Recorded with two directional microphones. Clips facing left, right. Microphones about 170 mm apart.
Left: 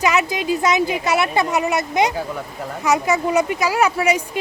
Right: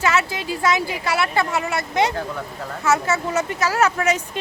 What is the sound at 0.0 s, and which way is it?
Speech, 15° left (ahead or behind).